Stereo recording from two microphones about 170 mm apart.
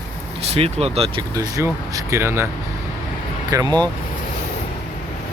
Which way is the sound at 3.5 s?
25° right (ahead or behind).